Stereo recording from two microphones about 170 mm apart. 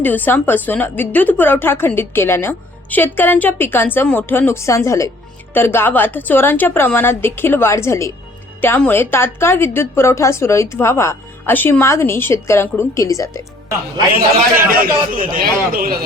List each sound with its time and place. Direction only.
0.0 s a woman's voice: 10° left (ahead or behind)
14.3 s a man's voice: 55° right (ahead or behind)